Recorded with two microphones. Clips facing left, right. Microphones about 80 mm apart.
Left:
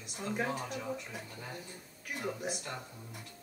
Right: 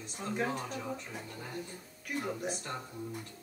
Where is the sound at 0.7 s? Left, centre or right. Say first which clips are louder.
Even; right.